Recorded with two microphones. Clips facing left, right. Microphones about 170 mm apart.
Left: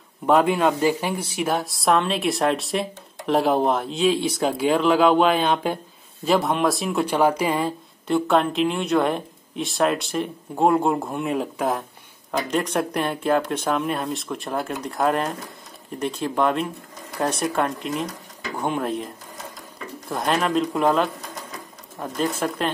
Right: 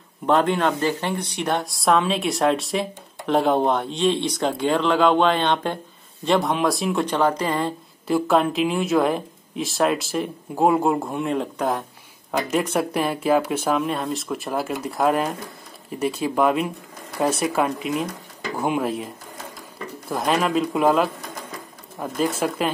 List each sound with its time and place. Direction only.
0.3 s speech: 5° left (ahead or behind)
20.1 s speech: 5° right (ahead or behind)